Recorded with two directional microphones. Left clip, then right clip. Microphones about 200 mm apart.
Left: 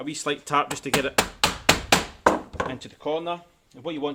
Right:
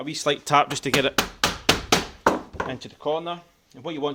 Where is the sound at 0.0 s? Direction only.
30° right (ahead or behind).